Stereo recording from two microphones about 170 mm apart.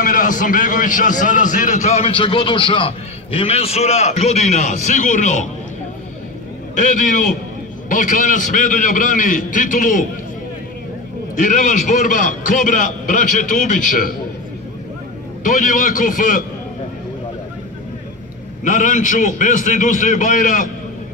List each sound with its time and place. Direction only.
0.0 s a man's voice: 50° left (ahead or behind)
7.9 s a man's voice: 50° left (ahead or behind)
11.3 s a man's voice: 50° left (ahead or behind)
15.4 s a man's voice: 50° left (ahead or behind)
18.6 s a man's voice: 50° left (ahead or behind)